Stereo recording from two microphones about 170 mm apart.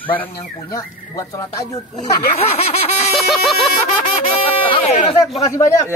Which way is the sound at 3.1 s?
Centre (ahead or behind).